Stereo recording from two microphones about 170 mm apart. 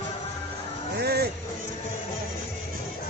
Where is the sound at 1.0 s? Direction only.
70° right (ahead or behind).